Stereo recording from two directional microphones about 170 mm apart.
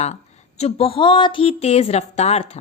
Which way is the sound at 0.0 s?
40° left (ahead or behind).